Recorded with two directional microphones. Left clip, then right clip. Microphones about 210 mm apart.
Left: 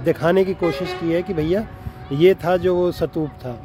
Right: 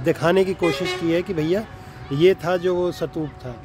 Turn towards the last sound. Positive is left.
turn(degrees=25)  # may be behind; listen again after turning